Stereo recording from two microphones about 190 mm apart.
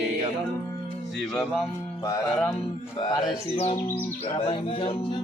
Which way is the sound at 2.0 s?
20° left (ahead or behind).